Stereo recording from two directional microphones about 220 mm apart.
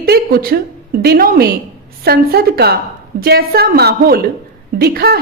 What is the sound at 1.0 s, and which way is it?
A woman's voice, 45° right (ahead or behind).